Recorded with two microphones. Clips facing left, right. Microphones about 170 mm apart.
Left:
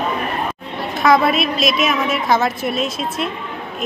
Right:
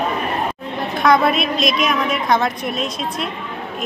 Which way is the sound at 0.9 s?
Centre (ahead or behind).